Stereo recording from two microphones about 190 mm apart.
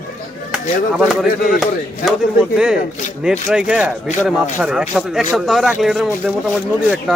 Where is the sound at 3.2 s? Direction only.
5° right (ahead or behind).